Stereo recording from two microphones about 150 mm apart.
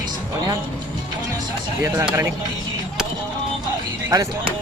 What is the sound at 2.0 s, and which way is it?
Speech, 15° right (ahead or behind).